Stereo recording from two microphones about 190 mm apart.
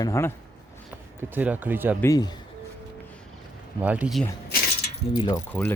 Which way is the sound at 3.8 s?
5° right (ahead or behind).